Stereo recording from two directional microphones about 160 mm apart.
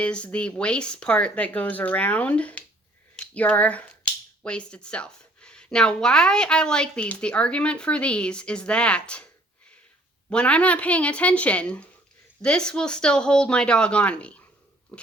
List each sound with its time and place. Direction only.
0.0 s speech: 5° left (ahead or behind)
10.2 s speech: 5° left (ahead or behind)